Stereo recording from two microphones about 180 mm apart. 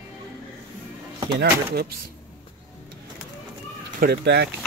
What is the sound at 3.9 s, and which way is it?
Speech, 65° right (ahead or behind).